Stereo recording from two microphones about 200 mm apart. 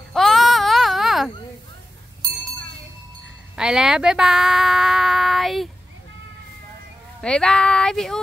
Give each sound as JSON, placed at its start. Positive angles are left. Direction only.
{"t": 0.1, "sound": "baby cry", "side_deg": 0}
{"t": 3.5, "sound": "a sound", "side_deg": -5}
{"t": 7.2, "sound": "speech", "side_deg": 5}